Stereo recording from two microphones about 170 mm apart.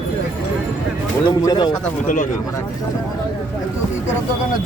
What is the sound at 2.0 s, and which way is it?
Speech, 50° left (ahead or behind).